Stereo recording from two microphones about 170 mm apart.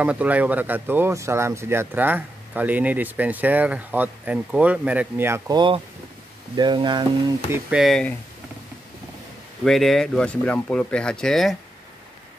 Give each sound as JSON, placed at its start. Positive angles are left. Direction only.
{"t": 0.0, "sound": "speech", "side_deg": -10}
{"t": 6.5, "sound": "speech", "side_deg": -25}
{"t": 7.5, "sound": "speech", "side_deg": 0}
{"t": 9.7, "sound": "speech", "side_deg": 0}